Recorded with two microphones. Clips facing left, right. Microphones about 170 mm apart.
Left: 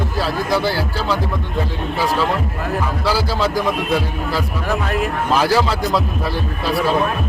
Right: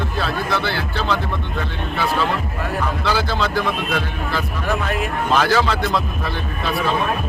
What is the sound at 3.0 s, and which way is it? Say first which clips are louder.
Speech: left 3 dB; 10° left (ahead or behind).